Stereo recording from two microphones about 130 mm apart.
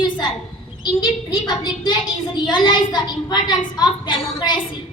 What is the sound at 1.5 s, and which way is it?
A woman's voice, 35° left (ahead or behind).